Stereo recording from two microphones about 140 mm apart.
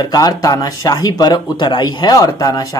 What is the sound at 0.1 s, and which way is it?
Speech, 25° left (ahead or behind).